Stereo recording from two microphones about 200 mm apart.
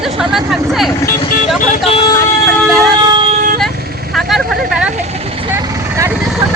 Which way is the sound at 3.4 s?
45° right (ahead or behind).